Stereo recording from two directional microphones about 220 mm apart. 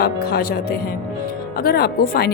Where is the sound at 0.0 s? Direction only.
45° left (ahead or behind).